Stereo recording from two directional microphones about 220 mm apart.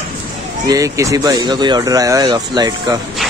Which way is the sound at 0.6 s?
15° right (ahead or behind).